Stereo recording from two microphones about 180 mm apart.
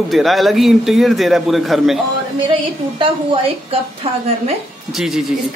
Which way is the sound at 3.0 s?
30° right (ahead or behind).